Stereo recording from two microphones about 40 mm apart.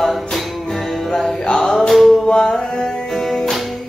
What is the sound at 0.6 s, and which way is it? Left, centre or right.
Music, centre.